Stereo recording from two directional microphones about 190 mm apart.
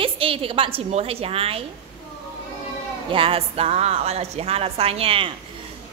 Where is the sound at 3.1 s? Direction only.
30° right (ahead or behind).